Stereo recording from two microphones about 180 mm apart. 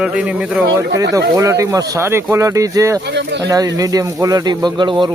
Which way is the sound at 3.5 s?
20° right (ahead or behind).